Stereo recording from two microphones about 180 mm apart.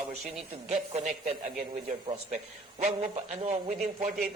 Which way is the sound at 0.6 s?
35° right (ahead or behind).